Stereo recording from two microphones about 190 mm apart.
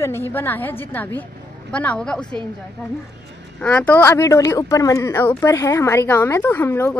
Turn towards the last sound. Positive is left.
turn(degrees=10)  # may be behind; listen again after turning